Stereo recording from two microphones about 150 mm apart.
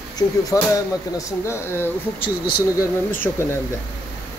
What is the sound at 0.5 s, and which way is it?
Speech, 20° left (ahead or behind).